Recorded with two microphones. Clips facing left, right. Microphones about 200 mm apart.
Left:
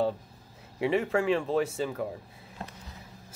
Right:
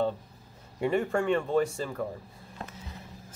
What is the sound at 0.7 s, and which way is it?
Speech, 5° left (ahead or behind).